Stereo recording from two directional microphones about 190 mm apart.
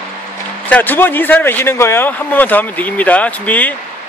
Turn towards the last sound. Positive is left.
turn(degrees=10)  # may be behind; listen again after turning